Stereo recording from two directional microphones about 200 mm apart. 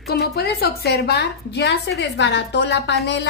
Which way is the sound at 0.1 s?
55° left (ahead or behind).